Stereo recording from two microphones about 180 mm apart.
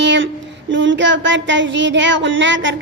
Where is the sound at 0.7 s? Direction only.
90° right.